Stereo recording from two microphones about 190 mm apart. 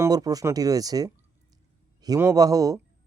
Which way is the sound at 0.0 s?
20° right (ahead or behind).